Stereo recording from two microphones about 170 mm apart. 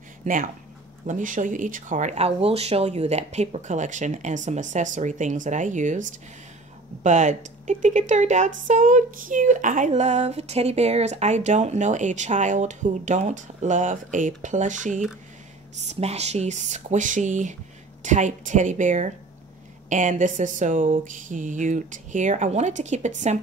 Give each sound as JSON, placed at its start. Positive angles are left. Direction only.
{"t": 0.2, "sound": "speech", "side_deg": -50}